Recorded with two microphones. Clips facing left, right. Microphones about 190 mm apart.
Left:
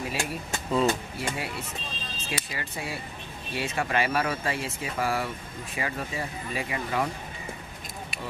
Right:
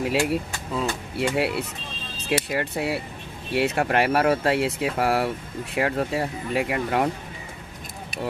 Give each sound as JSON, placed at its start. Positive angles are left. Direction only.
{"t": 0.0, "sound": "speech", "side_deg": -70}